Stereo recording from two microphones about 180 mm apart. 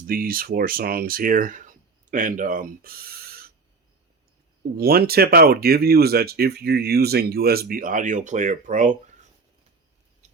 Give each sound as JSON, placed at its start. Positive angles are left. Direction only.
{"t": 0.1, "sound": "speech", "side_deg": -55}
{"t": 4.8, "sound": "speech", "side_deg": -60}
{"t": 10.2, "sound": "a sound", "side_deg": -40}